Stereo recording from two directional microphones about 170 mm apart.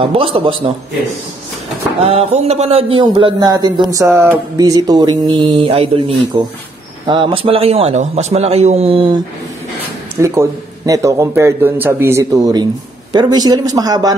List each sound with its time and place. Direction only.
0.0 s a man's voice: 30° right (ahead or behind)
2.0 s a man's voice: 35° right (ahead or behind)
3.9 s music: 15° right (ahead or behind)
7.1 s a man's voice: 30° right (ahead or behind)
10.2 s a man's voice: 15° right (ahead or behind)
13.1 s music: 25° right (ahead or behind)